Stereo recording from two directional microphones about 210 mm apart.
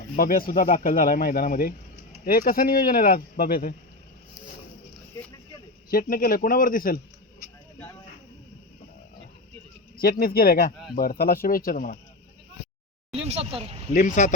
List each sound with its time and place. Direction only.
0.2 s speech: 45° left (ahead or behind)
5.9 s speech: 45° left (ahead or behind)
10.0 s speech: 45° left (ahead or behind)
13.2 s speech: 30° right (ahead or behind)
13.9 s speech: 35° left (ahead or behind)